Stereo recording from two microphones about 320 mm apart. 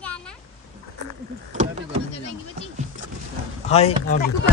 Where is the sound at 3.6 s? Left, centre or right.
Centre.